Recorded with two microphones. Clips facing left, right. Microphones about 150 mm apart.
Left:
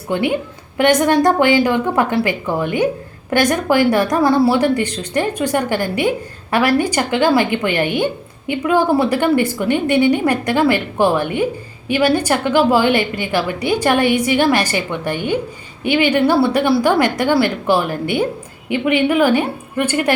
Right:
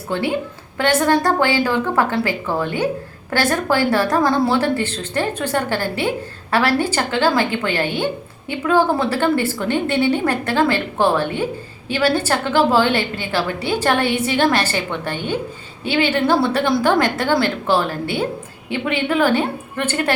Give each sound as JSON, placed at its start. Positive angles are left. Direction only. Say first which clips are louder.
{"t": 0.1, "sound": "a woman's voice", "louder": "left 3 dB", "side_deg": 15}